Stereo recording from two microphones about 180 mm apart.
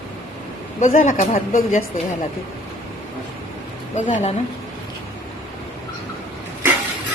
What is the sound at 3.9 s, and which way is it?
Speech, 40° left (ahead or behind).